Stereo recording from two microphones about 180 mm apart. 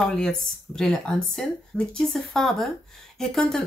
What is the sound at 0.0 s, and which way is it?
A woman's voice, 5° left (ahead or behind).